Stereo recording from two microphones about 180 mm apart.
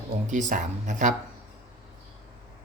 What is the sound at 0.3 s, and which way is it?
Speech, 45° right (ahead or behind).